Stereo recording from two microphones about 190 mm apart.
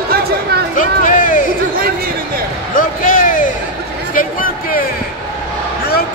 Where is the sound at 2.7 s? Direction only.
45° left (ahead or behind).